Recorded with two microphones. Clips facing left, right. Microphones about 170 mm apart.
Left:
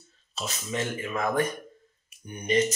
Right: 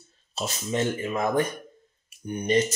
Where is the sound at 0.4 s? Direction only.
30° right (ahead or behind).